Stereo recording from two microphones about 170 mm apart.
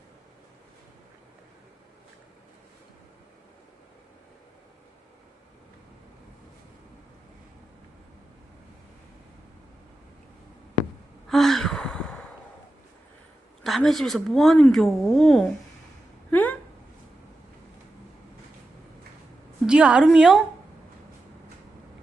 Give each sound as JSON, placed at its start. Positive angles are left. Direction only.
{"t": 11.3, "sound": "gasp", "side_deg": 0}
{"t": 13.7, "sound": "speech", "side_deg": 0}
{"t": 16.3, "sound": "a sound", "side_deg": 10}
{"t": 19.6, "sound": "a woman's voice", "side_deg": -5}